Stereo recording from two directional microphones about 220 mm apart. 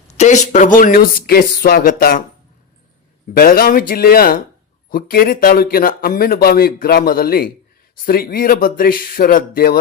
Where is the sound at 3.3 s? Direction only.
40° left (ahead or behind).